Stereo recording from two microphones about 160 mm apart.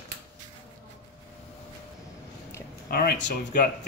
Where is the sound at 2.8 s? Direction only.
75° left (ahead or behind).